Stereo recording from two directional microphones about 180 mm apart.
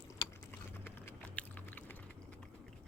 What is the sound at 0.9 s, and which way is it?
Typing, 10° left (ahead or behind).